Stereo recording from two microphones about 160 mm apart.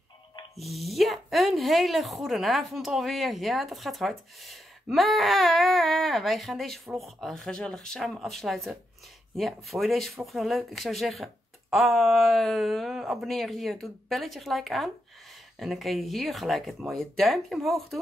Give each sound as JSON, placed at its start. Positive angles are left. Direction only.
{"t": 0.6, "sound": "speech", "side_deg": 0}